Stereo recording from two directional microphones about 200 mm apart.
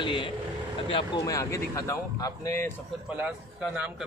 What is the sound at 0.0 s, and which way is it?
Vehicle, 25° left (ahead or behind).